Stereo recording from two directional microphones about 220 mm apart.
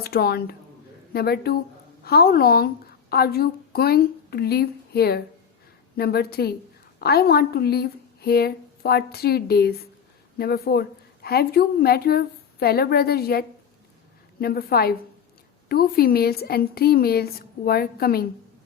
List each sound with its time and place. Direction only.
0.0 s a woman's voice: 45° left (ahead or behind)
14.4 s a woman's voice: 45° left (ahead or behind)